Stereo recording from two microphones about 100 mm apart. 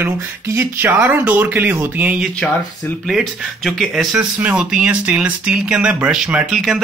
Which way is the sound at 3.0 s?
Centre (ahead or behind).